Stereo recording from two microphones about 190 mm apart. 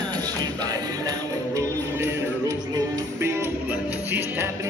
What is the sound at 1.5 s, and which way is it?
Music, 15° right (ahead or behind).